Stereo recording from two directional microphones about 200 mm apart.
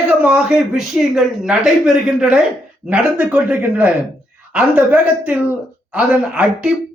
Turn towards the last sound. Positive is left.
turn(degrees=-5)  # may be behind; listen again after turning